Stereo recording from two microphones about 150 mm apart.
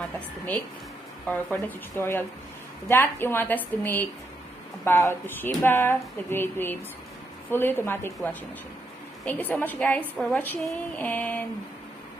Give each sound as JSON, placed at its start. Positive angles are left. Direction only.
{"t": 1.2, "sound": "a woman's voice", "side_deg": 10}